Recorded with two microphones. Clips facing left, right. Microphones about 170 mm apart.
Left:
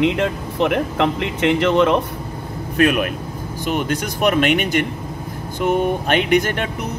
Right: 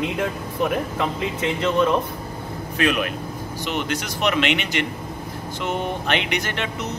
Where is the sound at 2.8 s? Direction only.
50° left (ahead or behind).